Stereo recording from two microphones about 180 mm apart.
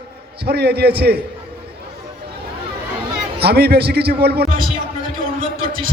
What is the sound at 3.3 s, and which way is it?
A man's voice, 65° right (ahead or behind).